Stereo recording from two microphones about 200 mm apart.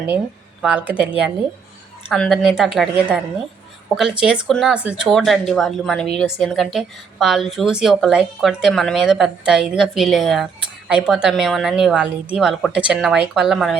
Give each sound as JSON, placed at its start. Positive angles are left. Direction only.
{"t": 0.6, "sound": "a woman's voice", "side_deg": -5}